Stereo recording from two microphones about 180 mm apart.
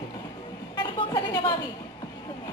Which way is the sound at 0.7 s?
25° left (ahead or behind).